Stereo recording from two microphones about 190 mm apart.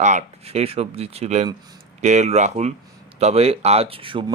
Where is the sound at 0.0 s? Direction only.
40° right (ahead or behind).